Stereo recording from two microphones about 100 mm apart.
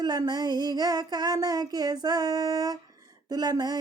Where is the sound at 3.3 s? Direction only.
40° right (ahead or behind).